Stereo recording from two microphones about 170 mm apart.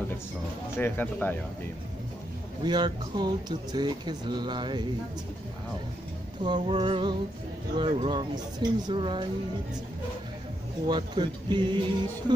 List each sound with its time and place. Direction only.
0.7 s speech: 10° left (ahead or behind)
2.6 s speech: 25° right (ahead or behind)
6.4 s speech: 30° right (ahead or behind)
10.9 s speech: 25° right (ahead or behind)